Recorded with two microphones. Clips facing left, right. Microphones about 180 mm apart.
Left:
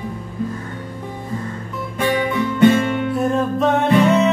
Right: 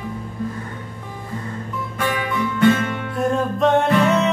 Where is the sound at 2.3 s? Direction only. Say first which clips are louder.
Left 3 dB; 20° left (ahead or behind).